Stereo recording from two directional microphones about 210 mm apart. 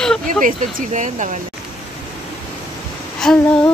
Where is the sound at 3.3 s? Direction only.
Centre (ahead or behind).